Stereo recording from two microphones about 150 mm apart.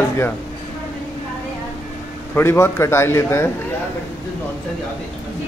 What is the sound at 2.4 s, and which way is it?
A man's voice, 15° left (ahead or behind).